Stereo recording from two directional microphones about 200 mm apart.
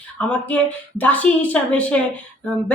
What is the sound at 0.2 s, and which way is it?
A woman's voice, 5° left (ahead or behind).